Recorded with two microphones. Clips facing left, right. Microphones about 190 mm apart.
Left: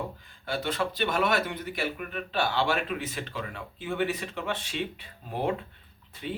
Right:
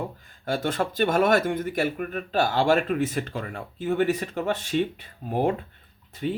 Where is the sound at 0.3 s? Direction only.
45° right (ahead or behind).